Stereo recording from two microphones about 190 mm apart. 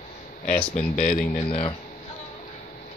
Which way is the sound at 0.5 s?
5° left (ahead or behind).